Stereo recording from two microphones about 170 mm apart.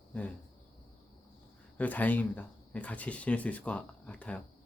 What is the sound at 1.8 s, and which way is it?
Speech, 10° left (ahead or behind).